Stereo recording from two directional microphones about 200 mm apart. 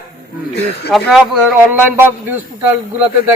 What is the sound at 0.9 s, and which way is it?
A man's voice, centre (ahead or behind).